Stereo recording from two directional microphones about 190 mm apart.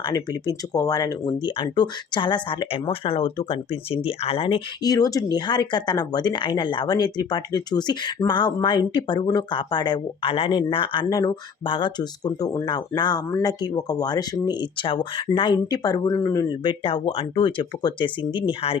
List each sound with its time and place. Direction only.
0.0 s speech: 20° left (ahead or behind)